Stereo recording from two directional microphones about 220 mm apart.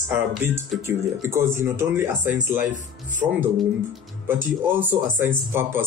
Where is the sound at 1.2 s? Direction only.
10° right (ahead or behind).